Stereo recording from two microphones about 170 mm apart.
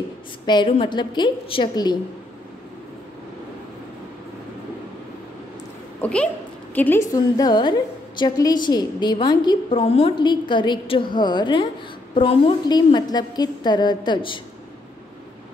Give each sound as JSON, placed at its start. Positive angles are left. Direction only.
{"t": 0.5, "sound": "a woman's voice", "side_deg": 30}
{"t": 5.9, "sound": "a sound", "side_deg": 5}
{"t": 6.7, "sound": "a woman's voice", "side_deg": 10}